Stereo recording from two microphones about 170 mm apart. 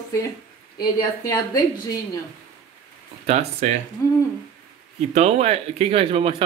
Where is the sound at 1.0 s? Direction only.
20° left (ahead or behind).